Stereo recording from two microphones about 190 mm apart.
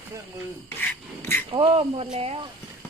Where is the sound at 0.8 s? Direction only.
10° left (ahead or behind).